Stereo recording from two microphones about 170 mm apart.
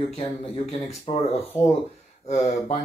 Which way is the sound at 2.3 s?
40° left (ahead or behind).